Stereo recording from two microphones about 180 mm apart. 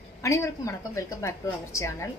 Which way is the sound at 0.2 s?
15° left (ahead or behind).